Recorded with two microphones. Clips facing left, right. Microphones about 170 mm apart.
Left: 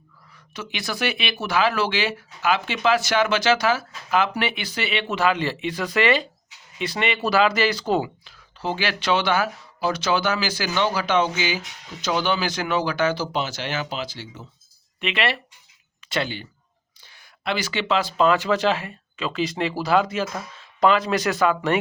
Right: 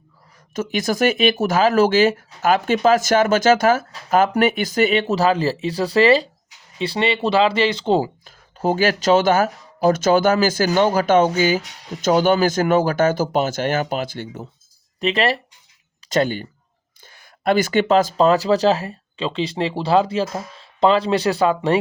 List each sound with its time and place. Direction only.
0.5 s speech: 45° right (ahead or behind); by 8.1 s 30° right (ahead or behind)
8.2 s speech: 45° right (ahead or behind)
15.0 s speech: 40° right (ahead or behind)